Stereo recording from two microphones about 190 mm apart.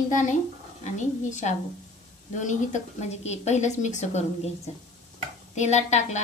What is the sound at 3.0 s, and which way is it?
A woman's voice, 35° left (ahead or behind).